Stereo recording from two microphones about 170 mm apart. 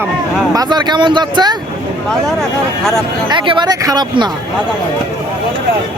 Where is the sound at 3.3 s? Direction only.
30° right (ahead or behind).